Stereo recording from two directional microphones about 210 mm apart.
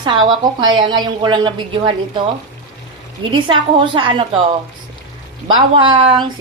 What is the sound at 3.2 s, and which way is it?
A woman's voice, 25° right (ahead or behind).